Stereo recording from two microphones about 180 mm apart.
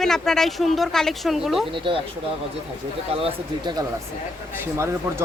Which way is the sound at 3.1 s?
30° right (ahead or behind).